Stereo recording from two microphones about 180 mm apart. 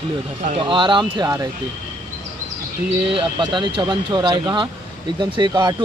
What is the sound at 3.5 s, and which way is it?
Speech, 25° right (ahead or behind).